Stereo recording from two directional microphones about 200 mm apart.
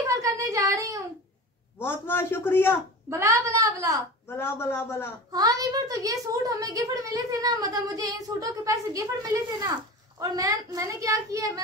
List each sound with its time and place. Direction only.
0.0 s a sound: 15° right (ahead or behind)
1.8 s a man's voice: 10° left (ahead or behind)
3.1 s a woman's voice: 15° right (ahead or behind)
4.3 s a man's voice: 10° left (ahead or behind)
5.3 s a woman's voice: 20° right (ahead or behind)